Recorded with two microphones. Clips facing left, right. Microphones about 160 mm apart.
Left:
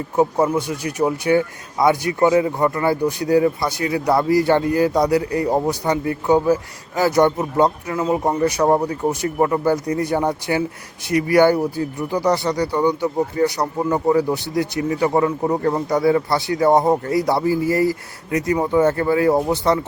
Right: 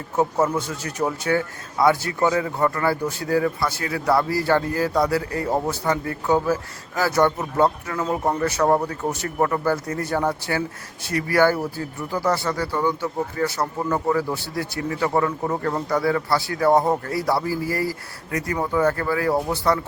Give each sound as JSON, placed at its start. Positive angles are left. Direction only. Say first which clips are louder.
{"t": 0.2, "sound": "speech", "louder": "left 3 dB", "side_deg": 15}